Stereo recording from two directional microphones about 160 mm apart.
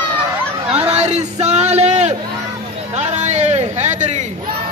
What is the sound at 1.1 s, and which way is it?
Speech, 45° right (ahead or behind).